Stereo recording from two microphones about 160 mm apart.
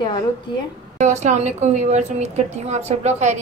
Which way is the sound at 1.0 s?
50° right (ahead or behind).